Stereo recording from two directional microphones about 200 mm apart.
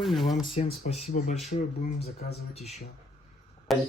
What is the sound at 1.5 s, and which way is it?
Speech, 45° left (ahead or behind).